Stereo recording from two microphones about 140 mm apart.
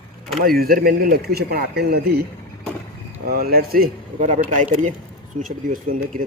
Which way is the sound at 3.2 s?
90° right.